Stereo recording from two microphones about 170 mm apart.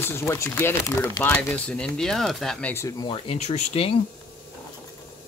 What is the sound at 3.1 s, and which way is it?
Speech, 40° left (ahead or behind).